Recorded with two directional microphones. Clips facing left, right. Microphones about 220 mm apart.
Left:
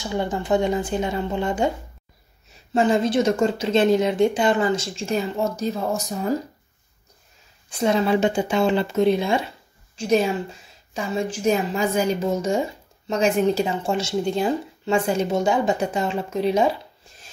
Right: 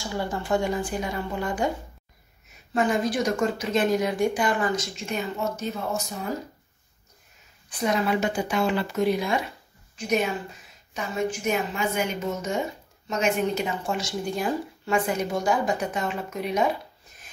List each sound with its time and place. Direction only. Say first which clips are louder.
0.0 s a woman's voice: left 4 dB; 20° left (ahead or behind)
2.7 s a woman's voice: left 5 dB; 25° left (ahead or behind)
7.7 s a woman's voice: left 5 dB; 25° left (ahead or behind)